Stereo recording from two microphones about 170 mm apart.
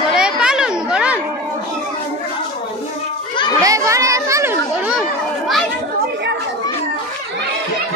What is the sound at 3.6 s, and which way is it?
Chatter, 20° right (ahead or behind).